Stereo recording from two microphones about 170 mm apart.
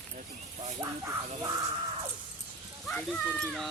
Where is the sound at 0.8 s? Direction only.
20° right (ahead or behind).